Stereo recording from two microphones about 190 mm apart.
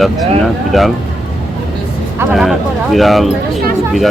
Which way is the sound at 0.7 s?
Centre (ahead or behind).